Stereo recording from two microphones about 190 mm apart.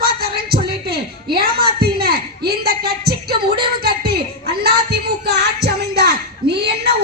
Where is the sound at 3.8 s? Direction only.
55° right (ahead or behind).